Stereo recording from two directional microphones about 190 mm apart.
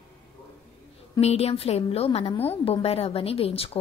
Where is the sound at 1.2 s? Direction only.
35° left (ahead or behind).